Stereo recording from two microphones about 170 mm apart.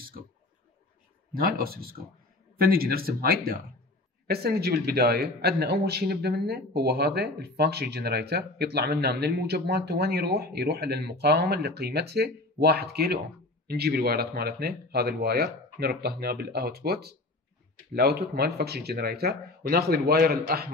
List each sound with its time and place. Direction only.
1.3 s a man's voice: 60° right (ahead or behind)